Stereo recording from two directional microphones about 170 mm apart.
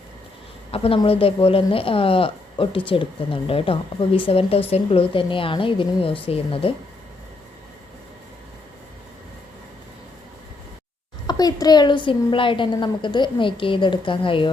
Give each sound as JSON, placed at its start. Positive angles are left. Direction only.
{"t": 0.7, "sound": "speech", "side_deg": 35}
{"t": 11.3, "sound": "a woman's voice", "side_deg": 20}